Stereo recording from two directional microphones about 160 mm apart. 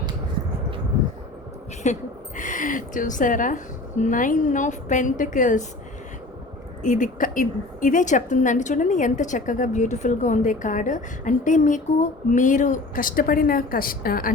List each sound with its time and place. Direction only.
1.8 s a woman's voice: 50° left (ahead or behind)
6.8 s a woman's voice: 55° left (ahead or behind)